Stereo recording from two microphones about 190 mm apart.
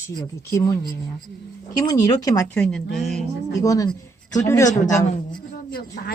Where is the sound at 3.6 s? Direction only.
20° left (ahead or behind).